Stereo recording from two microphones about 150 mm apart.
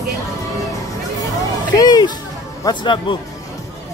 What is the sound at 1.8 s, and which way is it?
Music, 25° left (ahead or behind).